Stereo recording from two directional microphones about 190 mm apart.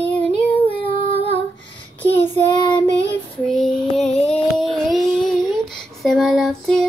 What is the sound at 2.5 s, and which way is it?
Child singing, 20° left (ahead or behind).